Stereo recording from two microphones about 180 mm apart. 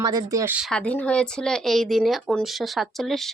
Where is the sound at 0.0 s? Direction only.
20° right (ahead or behind).